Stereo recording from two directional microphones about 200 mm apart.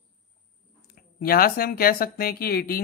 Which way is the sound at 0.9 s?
50° left (ahead or behind).